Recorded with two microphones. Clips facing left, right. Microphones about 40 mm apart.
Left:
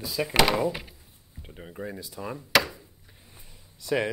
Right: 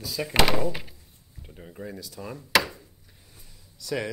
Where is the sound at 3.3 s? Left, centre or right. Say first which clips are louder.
Right 2 dB; left.